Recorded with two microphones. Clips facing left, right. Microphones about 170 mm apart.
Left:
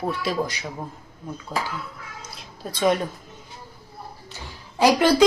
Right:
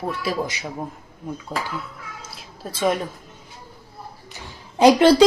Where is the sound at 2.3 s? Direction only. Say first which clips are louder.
Left 1 dB; centre (ahead or behind).